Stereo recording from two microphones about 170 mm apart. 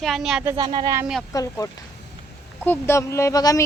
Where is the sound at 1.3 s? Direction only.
20° left (ahead or behind).